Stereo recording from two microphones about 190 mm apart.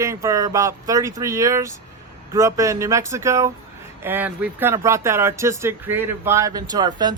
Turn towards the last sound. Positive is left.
turn(degrees=-20)  # may be behind; listen again after turning